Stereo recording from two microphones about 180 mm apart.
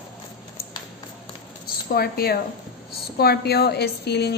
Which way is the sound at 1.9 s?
60° left (ahead or behind).